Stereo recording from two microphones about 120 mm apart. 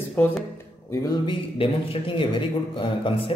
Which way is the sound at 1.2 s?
45° left (ahead or behind).